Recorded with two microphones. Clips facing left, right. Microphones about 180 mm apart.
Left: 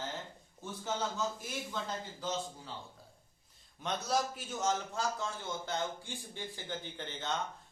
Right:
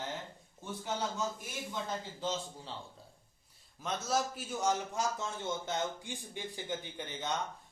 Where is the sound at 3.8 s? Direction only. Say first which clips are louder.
Even; 5° right (ahead or behind).